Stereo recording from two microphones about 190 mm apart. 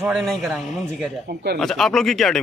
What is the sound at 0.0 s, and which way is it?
Speech, centre (ahead or behind).